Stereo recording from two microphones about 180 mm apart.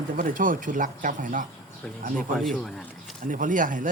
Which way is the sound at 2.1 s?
5° left (ahead or behind).